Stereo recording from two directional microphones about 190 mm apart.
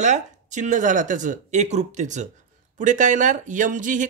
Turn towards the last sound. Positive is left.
turn(degrees=-45)  # may be behind; listen again after turning